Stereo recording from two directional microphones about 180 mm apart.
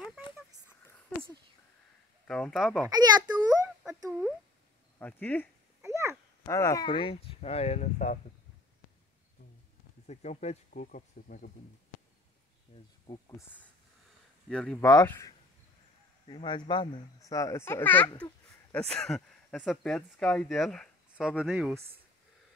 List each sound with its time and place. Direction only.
2.2 s a child's voice: 5° left (ahead or behind)
2.9 s a child's voice: 20° right (ahead or behind)
4.9 s speech: 10° left (ahead or behind)
5.8 s a sound: 15° right (ahead or behind)
6.4 s speech: 15° left (ahead or behind); by 8.2 s 40° left (ahead or behind)
10.0 s speech: 40° left (ahead or behind)
13.1 s speech: 25° left (ahead or behind)
14.5 s a child's voice: 5° left (ahead or behind)
16.3 s a child's voice: 25° left (ahead or behind); by 21.7 s centre (ahead or behind)